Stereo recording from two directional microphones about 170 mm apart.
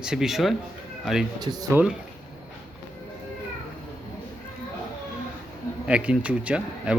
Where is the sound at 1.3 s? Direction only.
20° right (ahead or behind).